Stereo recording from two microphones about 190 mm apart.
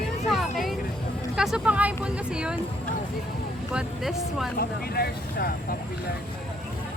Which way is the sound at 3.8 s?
Centre (ahead or behind).